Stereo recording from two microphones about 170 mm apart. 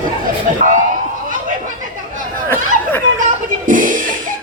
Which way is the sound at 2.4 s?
10° left (ahead or behind).